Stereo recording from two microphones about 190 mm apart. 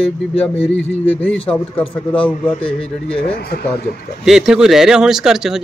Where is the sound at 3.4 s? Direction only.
55° left (ahead or behind).